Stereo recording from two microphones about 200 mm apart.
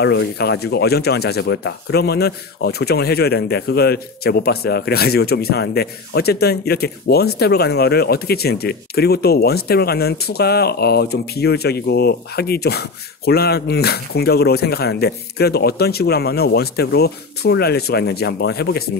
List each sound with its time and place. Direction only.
0.0 s speech: 60° left (ahead or behind)